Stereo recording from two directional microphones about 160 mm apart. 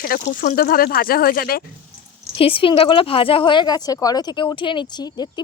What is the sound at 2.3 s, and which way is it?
A woman's voice, 35° left (ahead or behind).